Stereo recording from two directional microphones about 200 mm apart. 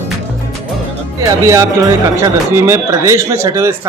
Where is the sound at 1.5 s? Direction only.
15° right (ahead or behind).